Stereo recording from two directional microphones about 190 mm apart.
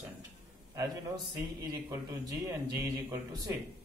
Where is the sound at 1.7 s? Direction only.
20° right (ahead or behind).